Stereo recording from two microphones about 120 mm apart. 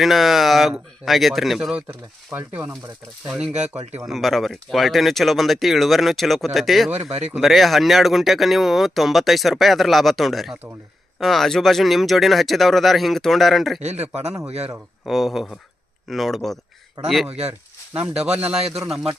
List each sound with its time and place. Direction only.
0.0 s speech: centre (ahead or behind)
1.9 s speech: 15° right (ahead or behind); by 6.9 s centre (ahead or behind)
6.9 s speech: 60° right (ahead or behind)
7.3 s speech: centre (ahead or behind)
13.8 s speech: 65° right (ahead or behind)
15.0 s speech: centre (ahead or behind)
17.2 s speech: 60° right (ahead or behind)
18.2 s speech: 10° right (ahead or behind)